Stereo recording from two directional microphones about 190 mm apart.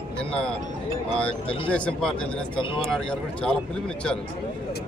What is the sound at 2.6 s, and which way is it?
Speech, 25° left (ahead or behind).